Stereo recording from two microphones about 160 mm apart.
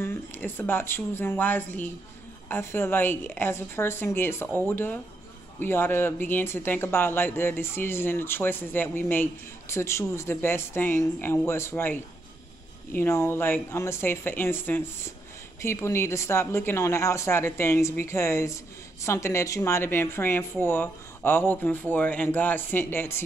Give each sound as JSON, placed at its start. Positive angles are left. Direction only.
{"t": 0.0, "sound": "speech", "side_deg": 15}